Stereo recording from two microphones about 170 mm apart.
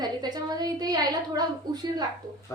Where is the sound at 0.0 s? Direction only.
25° right (ahead or behind).